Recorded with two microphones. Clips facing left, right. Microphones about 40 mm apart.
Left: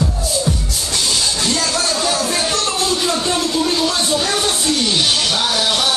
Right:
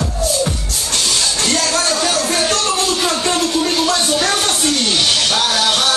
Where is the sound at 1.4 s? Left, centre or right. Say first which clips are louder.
Right 2 dB; right.